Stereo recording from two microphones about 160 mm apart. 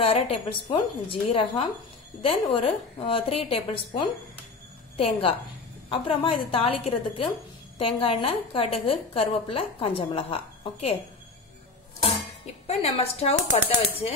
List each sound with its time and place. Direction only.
0.0 s a woman's voice: 40° left (ahead or behind)
12.6 s a woman's voice: 40° left (ahead or behind)